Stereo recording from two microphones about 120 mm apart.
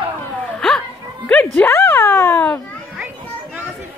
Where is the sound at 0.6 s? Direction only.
5° left (ahead or behind).